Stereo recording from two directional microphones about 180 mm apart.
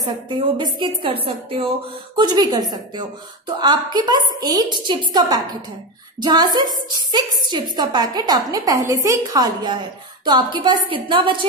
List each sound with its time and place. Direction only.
0.0 s a woman's voice: 25° right (ahead or behind)